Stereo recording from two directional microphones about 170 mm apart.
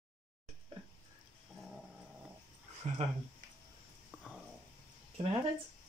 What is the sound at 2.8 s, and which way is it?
Speech, 40° right (ahead or behind).